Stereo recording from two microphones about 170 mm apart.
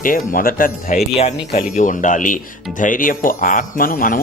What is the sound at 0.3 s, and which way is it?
Speech, 55° left (ahead or behind).